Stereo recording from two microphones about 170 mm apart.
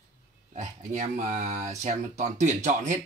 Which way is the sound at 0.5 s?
45° right (ahead or behind).